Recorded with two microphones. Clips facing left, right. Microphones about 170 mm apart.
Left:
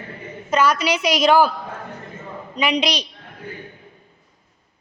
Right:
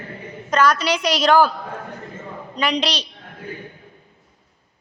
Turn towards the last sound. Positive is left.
turn(degrees=10)  # may be behind; listen again after turning